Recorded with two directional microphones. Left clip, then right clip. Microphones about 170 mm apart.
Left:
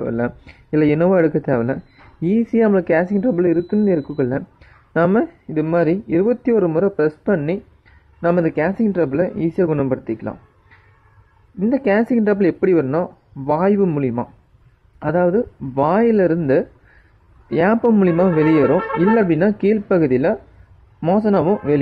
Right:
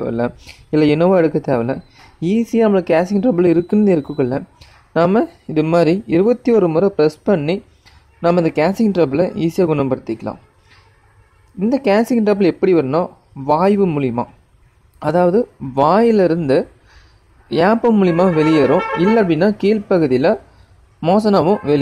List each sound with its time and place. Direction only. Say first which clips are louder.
0.0 s speech: right 2 dB; centre (ahead or behind)
3.1 s speech: right 3 dB; 15° right (ahead or behind)
4.2 s speech: right 2 dB; centre (ahead or behind)
5.5 s speech: right 4 dB; 15° right (ahead or behind)
11.6 s speech: right 2 dB; centre (ahead or behind)